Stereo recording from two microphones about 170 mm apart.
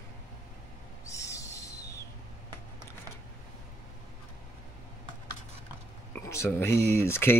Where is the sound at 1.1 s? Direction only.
20° left (ahead or behind).